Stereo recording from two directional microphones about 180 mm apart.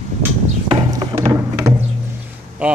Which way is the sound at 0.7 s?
20° right (ahead or behind).